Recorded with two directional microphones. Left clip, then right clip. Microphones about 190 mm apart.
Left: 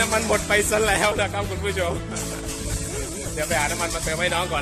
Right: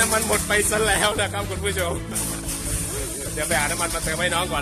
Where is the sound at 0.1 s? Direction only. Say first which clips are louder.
Left 1 dB; 20° left (ahead or behind).